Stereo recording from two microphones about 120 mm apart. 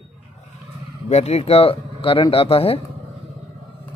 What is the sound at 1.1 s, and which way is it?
Speech, 65° left (ahead or behind).